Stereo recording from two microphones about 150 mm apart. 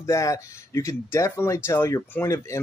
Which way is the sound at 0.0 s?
20° left (ahead or behind).